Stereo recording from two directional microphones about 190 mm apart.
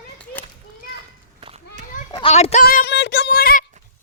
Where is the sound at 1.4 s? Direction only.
35° right (ahead or behind).